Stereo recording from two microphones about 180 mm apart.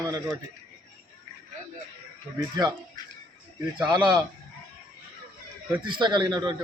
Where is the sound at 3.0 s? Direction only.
20° left (ahead or behind).